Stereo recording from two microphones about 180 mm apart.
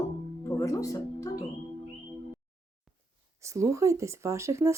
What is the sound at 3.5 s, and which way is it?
Speech, 15° right (ahead or behind).